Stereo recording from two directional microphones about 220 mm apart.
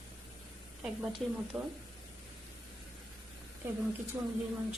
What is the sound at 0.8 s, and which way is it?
Speech, 5° right (ahead or behind).